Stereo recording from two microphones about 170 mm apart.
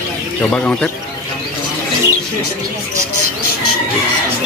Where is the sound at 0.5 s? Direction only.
5° left (ahead or behind).